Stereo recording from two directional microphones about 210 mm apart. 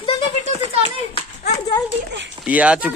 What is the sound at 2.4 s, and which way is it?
Speech, 5° right (ahead or behind).